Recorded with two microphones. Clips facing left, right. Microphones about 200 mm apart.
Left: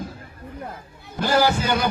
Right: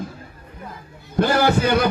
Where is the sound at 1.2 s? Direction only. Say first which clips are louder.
Right 2 dB; 55° right (ahead or behind).